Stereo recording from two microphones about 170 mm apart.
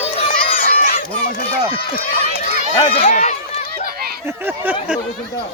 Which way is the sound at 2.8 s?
35° left (ahead or behind).